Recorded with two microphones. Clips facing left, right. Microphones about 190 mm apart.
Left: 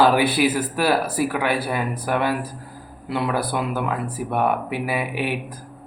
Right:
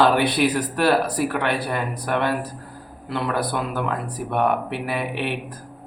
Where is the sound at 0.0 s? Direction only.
5° left (ahead or behind).